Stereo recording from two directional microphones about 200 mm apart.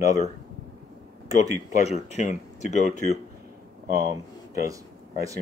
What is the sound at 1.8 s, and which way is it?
Speech, 35° left (ahead or behind).